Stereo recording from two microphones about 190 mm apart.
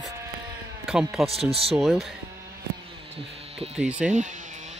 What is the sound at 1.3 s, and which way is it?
Speech, 30° right (ahead or behind).